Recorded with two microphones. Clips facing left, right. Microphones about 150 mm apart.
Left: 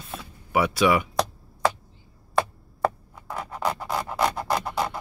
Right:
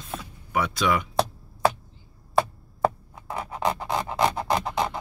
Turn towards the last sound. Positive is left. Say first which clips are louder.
# right 1 dB
turn(degrees=-20)  # may be behind; listen again after turning